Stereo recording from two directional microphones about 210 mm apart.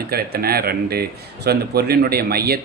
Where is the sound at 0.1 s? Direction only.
45° right (ahead or behind).